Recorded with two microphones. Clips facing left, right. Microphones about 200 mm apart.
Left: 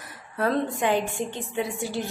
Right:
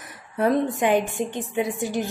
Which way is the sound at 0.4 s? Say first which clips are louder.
Right 4 dB; 15° right (ahead or behind).